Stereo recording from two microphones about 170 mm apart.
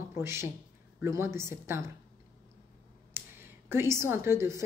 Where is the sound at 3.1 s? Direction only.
15° right (ahead or behind).